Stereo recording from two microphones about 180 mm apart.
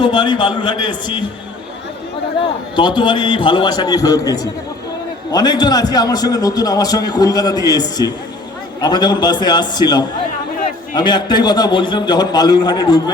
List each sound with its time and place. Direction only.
0.0 s a man's voice: 25° left (ahead or behind)
2.7 s a man's voice: 25° left (ahead or behind)